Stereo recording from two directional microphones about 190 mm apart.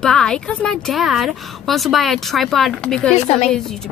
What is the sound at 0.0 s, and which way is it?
Speech, 5° left (ahead or behind).